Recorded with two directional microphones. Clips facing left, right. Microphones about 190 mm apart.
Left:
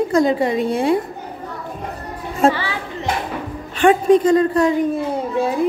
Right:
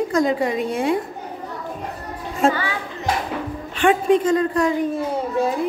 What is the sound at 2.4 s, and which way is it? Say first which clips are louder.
Speech: left 3 dB; 30° left (ahead or behind).